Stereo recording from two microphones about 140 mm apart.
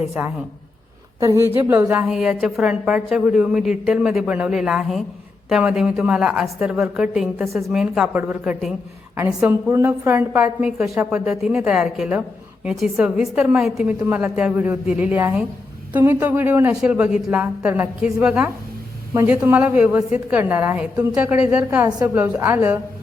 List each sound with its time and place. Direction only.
0.2 s a woman's voice: 10° right (ahead or behind)
2.1 s a woman's voice: 5° right (ahead or behind)
14.0 s a woman's voice: 15° right (ahead or behind)
21.8 s a woman's voice: 25° right (ahead or behind)